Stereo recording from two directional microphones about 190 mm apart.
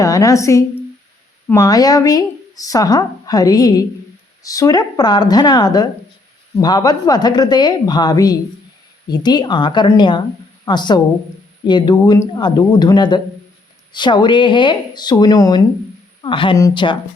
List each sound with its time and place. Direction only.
0.0 s a woman's voice: 20° left (ahead or behind)